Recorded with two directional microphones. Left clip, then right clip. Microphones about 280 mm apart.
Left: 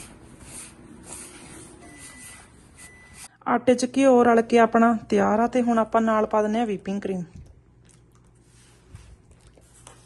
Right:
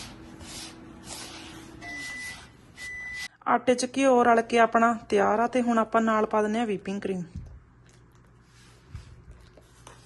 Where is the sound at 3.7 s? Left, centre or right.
Centre.